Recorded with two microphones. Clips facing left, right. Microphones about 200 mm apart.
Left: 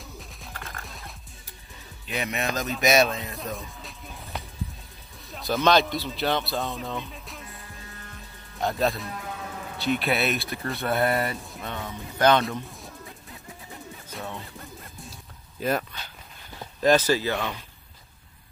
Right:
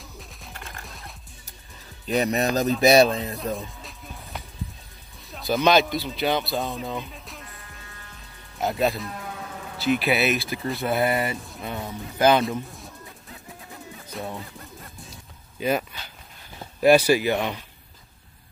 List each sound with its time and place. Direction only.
0.2 s music: centre (ahead or behind)
2.0 s speech: 35° right (ahead or behind)
3.5 s music: centre (ahead or behind)
5.3 s speech: centre (ahead or behind)
8.5 s speech: 5° right (ahead or behind)
14.1 s music: centre (ahead or behind)
16.8 s speech: 10° right (ahead or behind)